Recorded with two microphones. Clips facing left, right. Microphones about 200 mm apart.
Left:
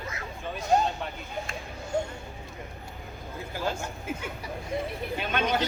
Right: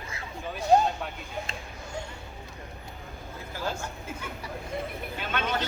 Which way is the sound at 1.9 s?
50° left (ahead or behind).